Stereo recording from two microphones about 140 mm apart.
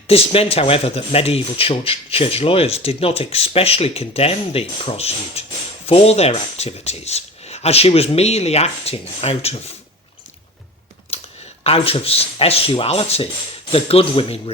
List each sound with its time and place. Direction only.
0.1 s speech: 45° left (ahead or behind)
11.1 s a sound: 45° left (ahead or behind)
11.6 s speech: 45° left (ahead or behind)